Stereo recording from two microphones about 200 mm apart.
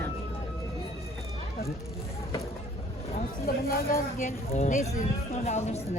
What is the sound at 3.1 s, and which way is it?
Speech, 45° left (ahead or behind).